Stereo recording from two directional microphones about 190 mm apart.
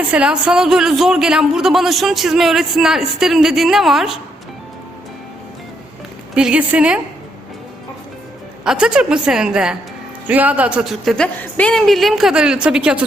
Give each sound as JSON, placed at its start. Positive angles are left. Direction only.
{"t": 0.1, "sound": "a man's voice", "side_deg": -5}
{"t": 6.3, "sound": "a man's voice", "side_deg": -5}
{"t": 8.6, "sound": "a man's voice", "side_deg": -5}